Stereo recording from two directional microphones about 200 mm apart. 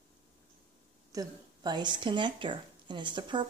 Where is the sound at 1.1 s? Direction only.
20° right (ahead or behind).